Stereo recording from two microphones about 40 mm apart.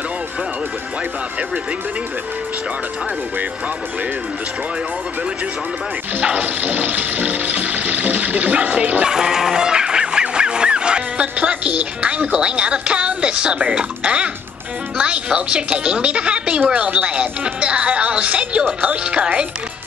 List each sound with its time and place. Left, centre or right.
6.1 s music: right
9.0 s goose: centre
15.0 s speech: right